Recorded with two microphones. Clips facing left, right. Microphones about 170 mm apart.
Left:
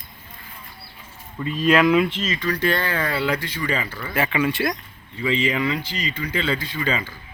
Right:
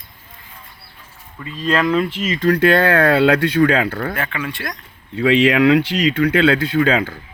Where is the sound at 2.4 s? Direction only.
55° right (ahead or behind).